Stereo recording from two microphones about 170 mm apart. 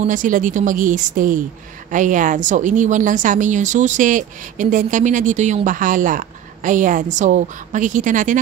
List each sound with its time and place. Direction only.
0.0 s a woman's voice: 50° right (ahead or behind)